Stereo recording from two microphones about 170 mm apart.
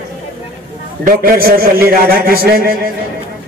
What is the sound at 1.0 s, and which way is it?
A man's voice, 60° right (ahead or behind).